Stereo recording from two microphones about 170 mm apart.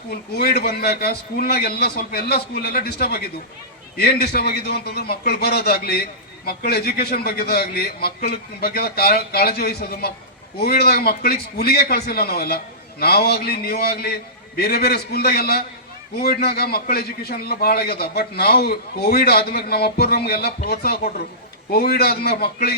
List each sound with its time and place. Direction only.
0.1 s a man's voice: 65° left (ahead or behind)